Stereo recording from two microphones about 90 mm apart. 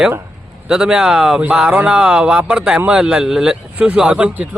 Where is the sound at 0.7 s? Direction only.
10° right (ahead or behind).